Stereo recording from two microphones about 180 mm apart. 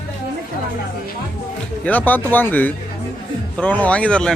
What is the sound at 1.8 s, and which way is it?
A man's voice, 10° left (ahead or behind).